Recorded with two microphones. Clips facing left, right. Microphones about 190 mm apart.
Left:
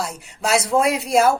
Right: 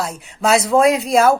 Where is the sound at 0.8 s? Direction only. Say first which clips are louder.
Right 5 dB; 5° left (ahead or behind).